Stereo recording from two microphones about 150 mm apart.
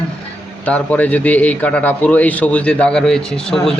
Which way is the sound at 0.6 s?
10° left (ahead or behind).